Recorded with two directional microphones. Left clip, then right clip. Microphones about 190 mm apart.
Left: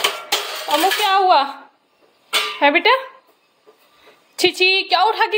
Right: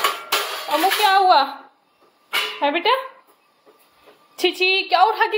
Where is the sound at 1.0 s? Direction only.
20° left (ahead or behind).